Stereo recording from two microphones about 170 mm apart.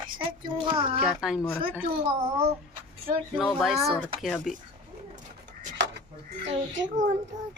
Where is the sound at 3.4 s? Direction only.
Centre (ahead or behind).